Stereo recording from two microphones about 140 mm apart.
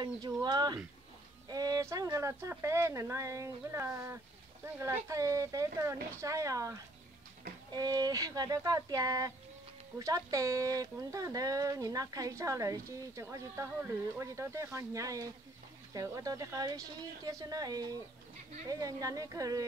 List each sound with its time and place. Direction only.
0.0 s speech: 30° right (ahead or behind)